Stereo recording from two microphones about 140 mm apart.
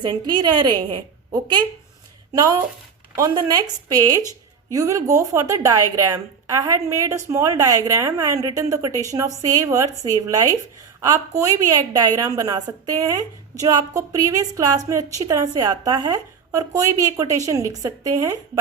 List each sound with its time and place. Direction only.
0.0 s a woman's voice: 30° right (ahead or behind)